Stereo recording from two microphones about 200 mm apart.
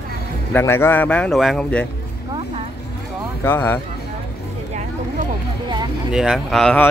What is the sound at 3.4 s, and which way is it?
Speech, 10° left (ahead or behind).